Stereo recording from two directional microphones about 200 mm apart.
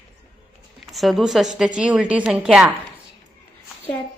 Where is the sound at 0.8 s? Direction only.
Centre (ahead or behind).